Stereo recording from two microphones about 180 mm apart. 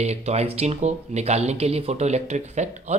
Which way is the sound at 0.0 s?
35° right (ahead or behind).